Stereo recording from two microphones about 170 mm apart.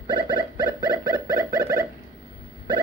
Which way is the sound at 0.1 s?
25° right (ahead or behind).